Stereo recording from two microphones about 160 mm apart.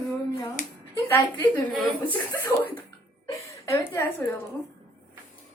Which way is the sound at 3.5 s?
20° left (ahead or behind).